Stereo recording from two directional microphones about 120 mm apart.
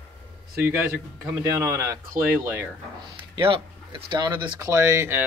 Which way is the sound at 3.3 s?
45° right (ahead or behind).